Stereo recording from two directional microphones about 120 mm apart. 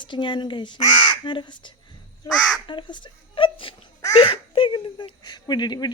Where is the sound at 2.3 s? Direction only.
Centre (ahead or behind).